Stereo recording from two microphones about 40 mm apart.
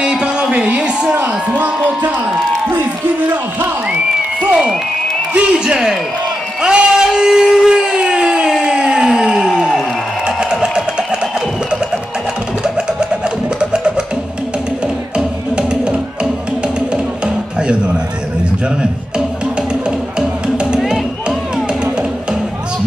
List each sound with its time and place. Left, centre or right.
0.0 s music: centre
0.7 s a sound: right
1.5 s speech: right
2.7 s speech: right
3.9 s applause: right
5.3 s a man's voice: right
6.6 s a sound: centre
7.7 s a sound: right
12.6 s music: right
15.1 s music: right
17.6 s music: right
20.2 s music: right